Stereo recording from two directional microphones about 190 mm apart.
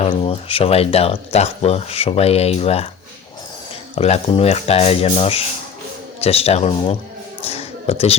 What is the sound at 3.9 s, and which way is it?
Speech, 35° left (ahead or behind).